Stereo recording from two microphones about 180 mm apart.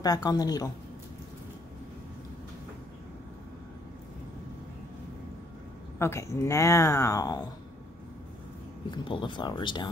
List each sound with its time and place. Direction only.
0.0 s speech: 20° left (ahead or behind)
5.9 s speech: 15° left (ahead or behind)
8.9 s speech: 25° left (ahead or behind)